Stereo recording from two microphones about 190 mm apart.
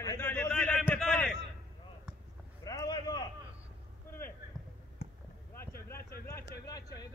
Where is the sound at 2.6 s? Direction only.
20° left (ahead or behind).